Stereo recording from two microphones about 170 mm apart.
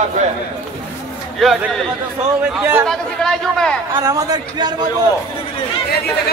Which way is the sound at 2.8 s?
5° left (ahead or behind).